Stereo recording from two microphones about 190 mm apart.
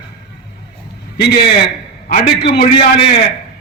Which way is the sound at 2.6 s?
35° left (ahead or behind).